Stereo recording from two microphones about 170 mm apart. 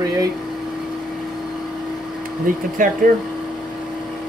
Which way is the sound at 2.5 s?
55° right (ahead or behind).